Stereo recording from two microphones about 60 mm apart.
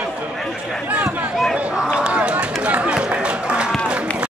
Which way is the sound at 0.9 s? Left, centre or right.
Right.